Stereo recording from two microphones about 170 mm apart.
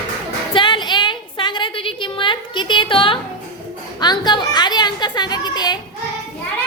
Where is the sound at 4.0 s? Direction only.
25° left (ahead or behind).